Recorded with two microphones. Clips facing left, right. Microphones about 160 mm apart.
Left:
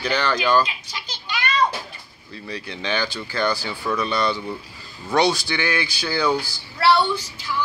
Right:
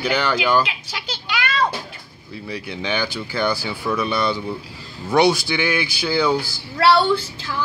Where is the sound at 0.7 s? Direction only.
90° right.